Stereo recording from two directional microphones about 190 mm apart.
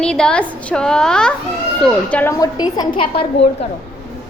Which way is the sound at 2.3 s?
20° left (ahead or behind).